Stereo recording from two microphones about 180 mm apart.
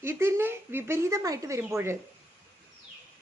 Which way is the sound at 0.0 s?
15° right (ahead or behind).